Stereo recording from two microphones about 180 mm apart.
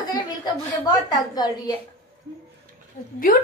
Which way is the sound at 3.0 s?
50° left (ahead or behind).